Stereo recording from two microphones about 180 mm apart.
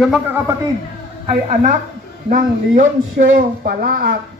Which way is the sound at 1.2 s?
40° right (ahead or behind).